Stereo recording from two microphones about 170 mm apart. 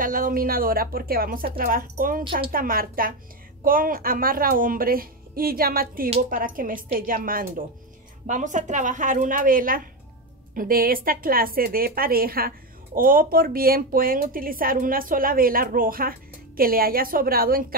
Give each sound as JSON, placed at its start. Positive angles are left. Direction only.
{"t": 0.0, "sound": "a woman's voice", "side_deg": -55}